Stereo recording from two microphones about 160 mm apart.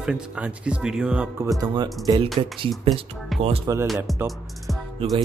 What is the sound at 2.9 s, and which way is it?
Speech, 40° right (ahead or behind).